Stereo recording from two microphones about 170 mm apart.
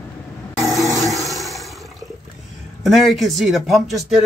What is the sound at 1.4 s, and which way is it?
Toilet flush, centre (ahead or behind).